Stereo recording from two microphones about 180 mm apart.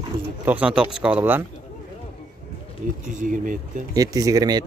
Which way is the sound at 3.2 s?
45° right (ahead or behind).